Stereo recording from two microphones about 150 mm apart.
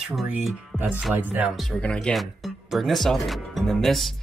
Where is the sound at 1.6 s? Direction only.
5° left (ahead or behind).